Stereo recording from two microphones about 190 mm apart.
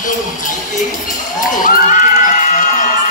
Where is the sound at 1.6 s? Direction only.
45° left (ahead or behind).